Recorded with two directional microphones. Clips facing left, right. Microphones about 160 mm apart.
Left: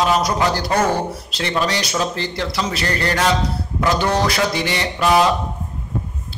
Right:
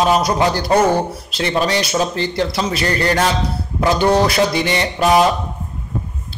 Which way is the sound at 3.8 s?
20° right (ahead or behind).